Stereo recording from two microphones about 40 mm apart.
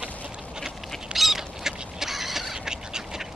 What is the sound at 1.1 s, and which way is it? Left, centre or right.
Duck, centre.